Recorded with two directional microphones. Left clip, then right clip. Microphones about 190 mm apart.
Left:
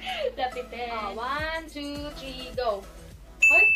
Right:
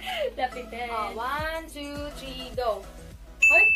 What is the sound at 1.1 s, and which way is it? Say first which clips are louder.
Music: even; centre (ahead or behind).